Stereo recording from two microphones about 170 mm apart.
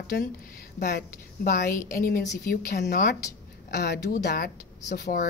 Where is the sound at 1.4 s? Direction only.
50° left (ahead or behind).